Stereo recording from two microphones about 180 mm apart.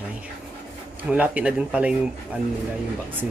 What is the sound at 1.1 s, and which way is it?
Speech, 10° right (ahead or behind).